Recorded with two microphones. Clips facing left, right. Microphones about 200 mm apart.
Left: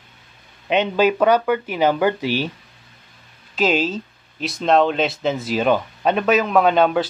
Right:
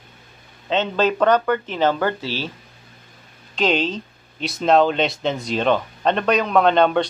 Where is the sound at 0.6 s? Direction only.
15° left (ahead or behind).